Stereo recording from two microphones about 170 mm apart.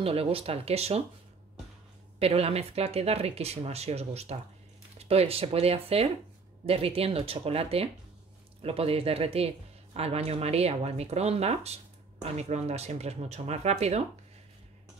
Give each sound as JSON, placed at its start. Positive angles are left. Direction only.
{"t": 0.0, "sound": "speech", "side_deg": -35}
{"t": 2.1, "sound": "speech", "side_deg": -35}